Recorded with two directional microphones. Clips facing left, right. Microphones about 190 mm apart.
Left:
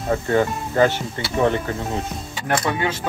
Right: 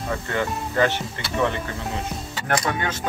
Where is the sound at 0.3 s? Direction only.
40° left (ahead or behind).